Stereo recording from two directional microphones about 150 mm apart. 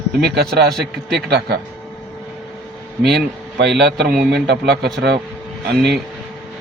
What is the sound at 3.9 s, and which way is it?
Speech, 90° right.